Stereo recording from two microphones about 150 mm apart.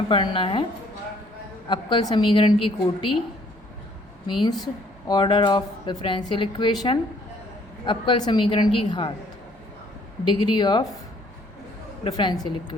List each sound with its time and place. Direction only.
0.1 s a woman's voice: 35° left (ahead or behind)
1.6 s a woman's voice: 30° left (ahead or behind)
4.3 s a woman's voice: 35° left (ahead or behind)
7.9 s a woman's voice: 30° left (ahead or behind)
10.2 s a woman's voice: 30° left (ahead or behind)
12.0 s a woman's voice: 30° left (ahead or behind)